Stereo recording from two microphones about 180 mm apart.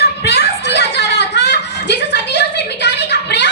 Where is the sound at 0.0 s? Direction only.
65° left (ahead or behind).